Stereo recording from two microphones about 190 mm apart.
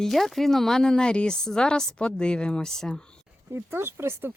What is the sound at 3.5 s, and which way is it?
Speech, 10° right (ahead or behind).